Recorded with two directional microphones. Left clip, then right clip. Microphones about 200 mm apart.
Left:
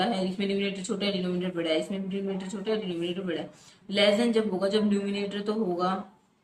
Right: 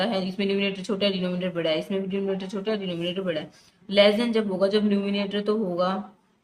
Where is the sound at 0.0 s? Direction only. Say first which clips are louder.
Right 2 dB; 60° right (ahead or behind).